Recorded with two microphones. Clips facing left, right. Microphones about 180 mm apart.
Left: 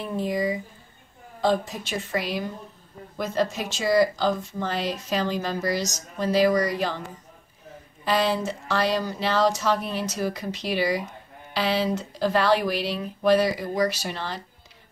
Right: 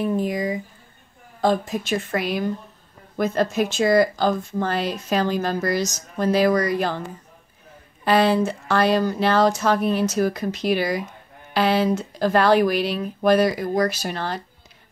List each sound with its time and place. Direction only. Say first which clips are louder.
0.0 s speech: right 3 dB; 45° right (ahead or behind)
8.0 s speech: right 6 dB; 55° right (ahead or behind)